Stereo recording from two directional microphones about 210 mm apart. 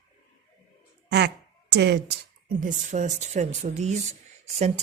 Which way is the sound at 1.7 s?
55° right (ahead or behind).